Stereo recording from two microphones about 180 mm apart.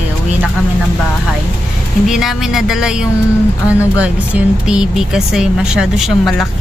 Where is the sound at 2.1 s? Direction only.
Centre (ahead or behind).